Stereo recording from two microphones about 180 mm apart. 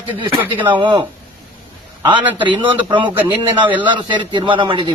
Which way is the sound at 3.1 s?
10° right (ahead or behind).